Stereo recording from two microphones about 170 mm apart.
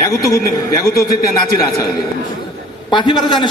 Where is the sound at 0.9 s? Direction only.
65° left (ahead or behind).